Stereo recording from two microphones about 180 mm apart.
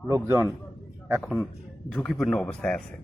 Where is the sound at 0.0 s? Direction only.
10° right (ahead or behind).